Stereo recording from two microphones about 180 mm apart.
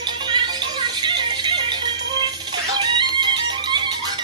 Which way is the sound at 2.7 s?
25° right (ahead or behind).